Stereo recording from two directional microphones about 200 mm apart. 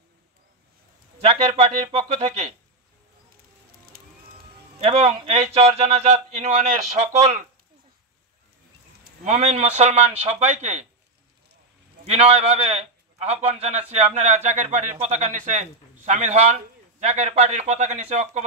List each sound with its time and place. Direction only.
1.2 s a man's voice: 30° right (ahead or behind)
4.8 s a man's voice: 30° right (ahead or behind)
9.2 s a man's voice: 35° right (ahead or behind)
12.0 s a man's voice: 30° right (ahead or behind)